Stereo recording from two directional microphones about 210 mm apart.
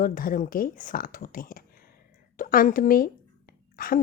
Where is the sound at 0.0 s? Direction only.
40° left (ahead or behind).